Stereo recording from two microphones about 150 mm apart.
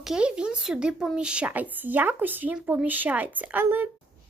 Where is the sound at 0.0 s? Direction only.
5° right (ahead or behind).